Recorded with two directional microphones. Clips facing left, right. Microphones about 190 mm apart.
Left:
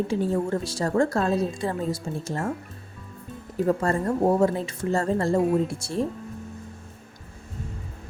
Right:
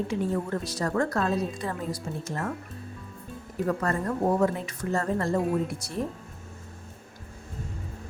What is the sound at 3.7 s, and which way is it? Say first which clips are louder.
A woman's voice: left 4 dB; 30° left (ahead or behind).